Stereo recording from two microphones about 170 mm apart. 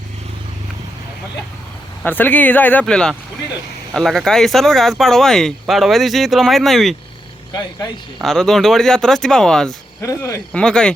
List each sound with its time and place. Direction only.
2.0 s speech: 10° left (ahead or behind)
8.2 s speech: centre (ahead or behind)
10.0 s speech: 20° left (ahead or behind)
10.5 s speech: 5° left (ahead or behind)